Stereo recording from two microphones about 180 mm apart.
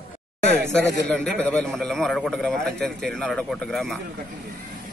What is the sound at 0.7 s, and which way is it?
A man's voice, 5° left (ahead or behind).